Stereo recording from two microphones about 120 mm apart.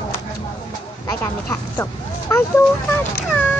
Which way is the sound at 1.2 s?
20° left (ahead or behind).